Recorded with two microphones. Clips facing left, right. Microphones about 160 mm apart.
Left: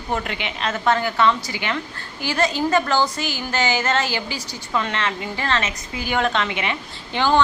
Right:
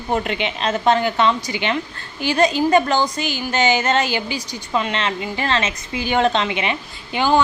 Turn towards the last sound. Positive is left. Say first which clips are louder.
# right 2 dB
turn(degrees=-10)  # may be behind; listen again after turning